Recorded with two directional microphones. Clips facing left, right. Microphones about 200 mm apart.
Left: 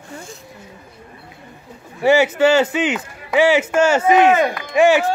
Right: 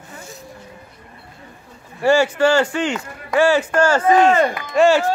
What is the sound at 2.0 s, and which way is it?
Speech, 20° left (ahead or behind).